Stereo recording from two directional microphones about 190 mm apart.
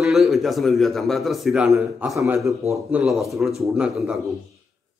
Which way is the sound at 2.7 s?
Centre (ahead or behind).